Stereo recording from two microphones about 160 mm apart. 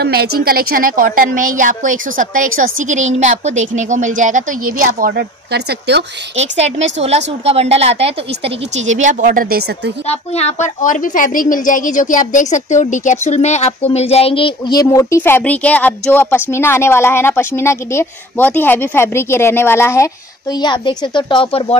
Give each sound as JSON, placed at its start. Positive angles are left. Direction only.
{"t": 0.0, "sound": "a woman's voice", "side_deg": -80}
{"t": 6.3, "sound": "a woman's voice", "side_deg": -45}
{"t": 10.0, "sound": "a woman's voice", "side_deg": 40}